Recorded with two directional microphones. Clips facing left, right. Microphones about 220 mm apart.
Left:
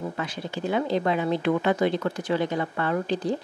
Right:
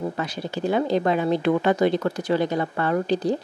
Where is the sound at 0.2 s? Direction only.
40° right (ahead or behind).